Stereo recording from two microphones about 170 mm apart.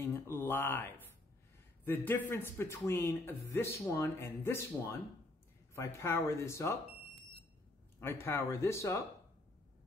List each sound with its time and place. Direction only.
0.0 s speech: 15° left (ahead or behind)
8.0 s speech: 15° left (ahead or behind)